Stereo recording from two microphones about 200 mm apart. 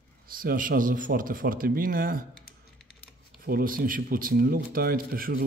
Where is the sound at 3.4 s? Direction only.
45° right (ahead or behind).